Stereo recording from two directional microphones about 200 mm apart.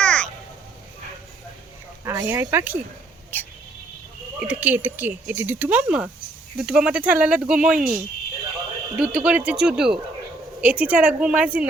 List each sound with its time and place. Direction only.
0.0 s a sound: 5° left (ahead or behind)
2.0 s speech: 15° right (ahead or behind)
3.3 s speech: 10° left (ahead or behind)
4.4 s speech: 5° right (ahead or behind)
7.8 s speech: 45° right (ahead or behind)
9.0 s speech: 5° right (ahead or behind)